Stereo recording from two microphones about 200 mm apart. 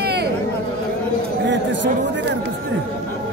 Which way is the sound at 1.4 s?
65° right (ahead or behind).